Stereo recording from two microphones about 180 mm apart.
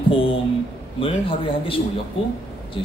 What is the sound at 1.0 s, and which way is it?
Speech, 30° left (ahead or behind).